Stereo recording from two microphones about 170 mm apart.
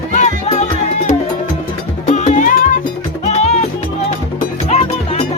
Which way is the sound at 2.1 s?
45° left (ahead or behind).